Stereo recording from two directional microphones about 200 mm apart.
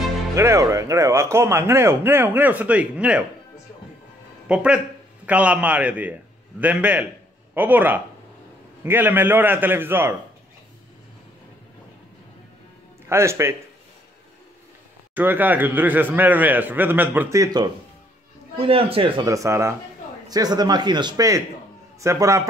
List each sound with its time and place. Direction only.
0.4 s speech: 15° right (ahead or behind)
4.5 s speech: 5° right (ahead or behind)
13.1 s speech: 15° right (ahead or behind)
15.1 s speech: 10° right (ahead or behind)
18.6 s a man's voice: 30° right (ahead or behind)